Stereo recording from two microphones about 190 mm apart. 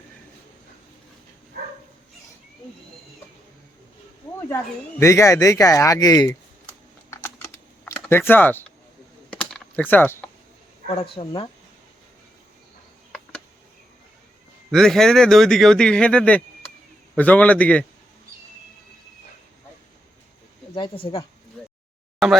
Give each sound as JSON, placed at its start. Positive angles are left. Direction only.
{"t": 4.9, "sound": "speech", "side_deg": 15}
{"t": 7.1, "sound": "typing", "side_deg": 15}
{"t": 10.8, "sound": "speech", "side_deg": 30}
{"t": 14.7, "sound": "a man's voice", "side_deg": 0}
{"t": 20.7, "sound": "speech", "side_deg": 25}